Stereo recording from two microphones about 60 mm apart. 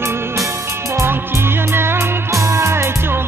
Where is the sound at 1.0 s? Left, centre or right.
Right.